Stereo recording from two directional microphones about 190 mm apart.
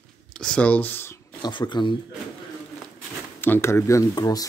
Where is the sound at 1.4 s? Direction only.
25° left (ahead or behind).